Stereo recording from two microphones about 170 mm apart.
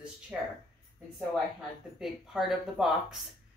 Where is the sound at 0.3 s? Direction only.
5° right (ahead or behind).